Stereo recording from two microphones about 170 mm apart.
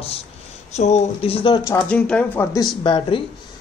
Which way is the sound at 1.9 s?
5° left (ahead or behind).